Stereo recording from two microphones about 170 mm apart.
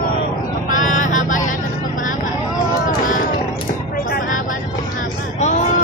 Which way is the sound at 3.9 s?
60° left (ahead or behind).